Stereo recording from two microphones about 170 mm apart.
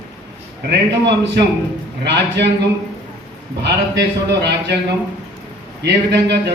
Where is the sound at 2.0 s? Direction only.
90° right.